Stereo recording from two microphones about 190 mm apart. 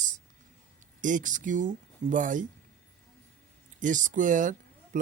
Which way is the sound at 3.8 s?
40° right (ahead or behind).